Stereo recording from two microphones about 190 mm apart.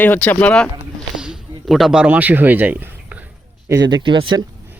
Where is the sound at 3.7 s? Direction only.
20° right (ahead or behind).